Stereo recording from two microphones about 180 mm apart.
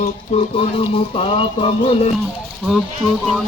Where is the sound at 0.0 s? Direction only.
35° left (ahead or behind).